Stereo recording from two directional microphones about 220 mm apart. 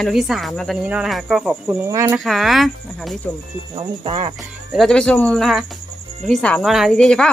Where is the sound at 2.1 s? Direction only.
Centre (ahead or behind).